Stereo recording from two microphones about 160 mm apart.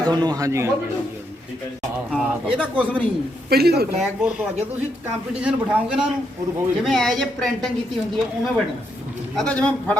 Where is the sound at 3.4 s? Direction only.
80° right.